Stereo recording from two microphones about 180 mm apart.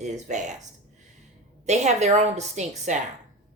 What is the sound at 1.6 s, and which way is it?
Speech, 40° right (ahead or behind).